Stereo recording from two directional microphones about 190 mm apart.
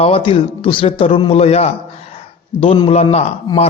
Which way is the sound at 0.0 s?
30° left (ahead or behind).